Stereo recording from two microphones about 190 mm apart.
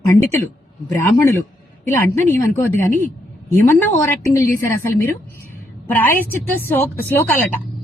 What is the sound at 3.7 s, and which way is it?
Speech, 10° left (ahead or behind).